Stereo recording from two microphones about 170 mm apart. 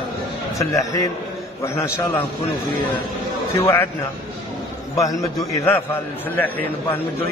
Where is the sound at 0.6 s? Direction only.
20° left (ahead or behind).